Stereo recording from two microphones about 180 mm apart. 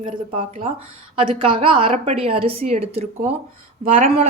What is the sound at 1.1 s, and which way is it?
A man's voice, 30° right (ahead or behind).